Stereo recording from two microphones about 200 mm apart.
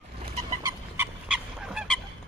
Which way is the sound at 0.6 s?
20° right (ahead or behind).